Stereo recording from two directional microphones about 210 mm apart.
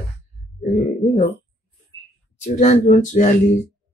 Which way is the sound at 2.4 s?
35° left (ahead or behind).